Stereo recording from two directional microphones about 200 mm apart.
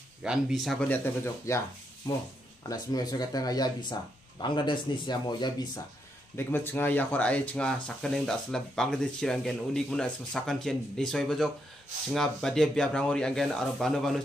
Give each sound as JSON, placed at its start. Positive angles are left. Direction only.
{"t": 0.2, "sound": "speech", "side_deg": -5}
{"t": 2.7, "sound": "a man's voice", "side_deg": 20}
{"t": 6.3, "sound": "speech", "side_deg": 10}